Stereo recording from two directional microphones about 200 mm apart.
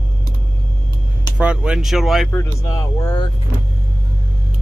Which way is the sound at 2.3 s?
15° left (ahead or behind).